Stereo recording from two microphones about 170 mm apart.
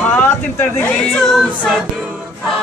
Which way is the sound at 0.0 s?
10° left (ahead or behind).